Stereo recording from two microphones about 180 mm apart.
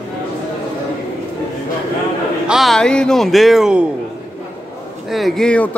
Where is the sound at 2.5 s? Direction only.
Centre (ahead or behind).